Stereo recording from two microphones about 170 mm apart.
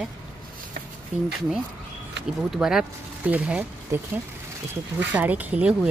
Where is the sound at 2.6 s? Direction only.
5° right (ahead or behind).